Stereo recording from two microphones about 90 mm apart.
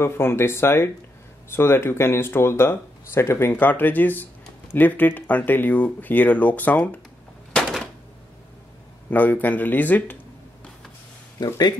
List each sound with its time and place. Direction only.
0.0 s speech: 25° left (ahead or behind)
9.1 s speech: 20° left (ahead or behind)
11.3 s speech: 45° left (ahead or behind)